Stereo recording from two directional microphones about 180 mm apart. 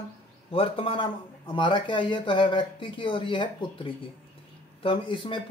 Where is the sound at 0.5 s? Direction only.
30° left (ahead or behind).